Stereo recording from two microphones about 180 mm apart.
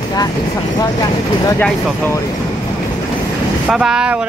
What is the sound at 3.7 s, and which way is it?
Speech, 5° right (ahead or behind).